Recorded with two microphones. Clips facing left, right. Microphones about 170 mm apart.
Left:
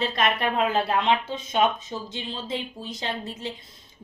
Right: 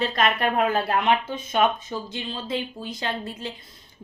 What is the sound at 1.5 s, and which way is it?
Speech, 50° right (ahead or behind).